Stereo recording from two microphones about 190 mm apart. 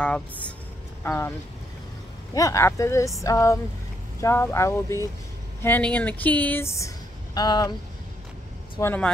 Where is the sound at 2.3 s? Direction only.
15° left (ahead or behind).